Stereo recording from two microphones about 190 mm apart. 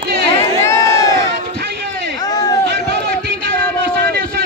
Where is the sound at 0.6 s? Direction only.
15° left (ahead or behind).